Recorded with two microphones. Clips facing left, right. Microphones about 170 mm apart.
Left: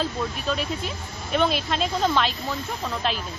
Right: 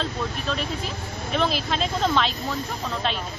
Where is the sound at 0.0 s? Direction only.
Centre (ahead or behind).